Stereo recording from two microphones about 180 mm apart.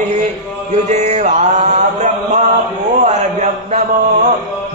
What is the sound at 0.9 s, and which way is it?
Speech, 40° right (ahead or behind).